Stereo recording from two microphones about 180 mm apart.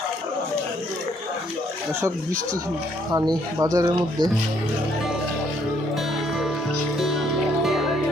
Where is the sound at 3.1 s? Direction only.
20° right (ahead or behind).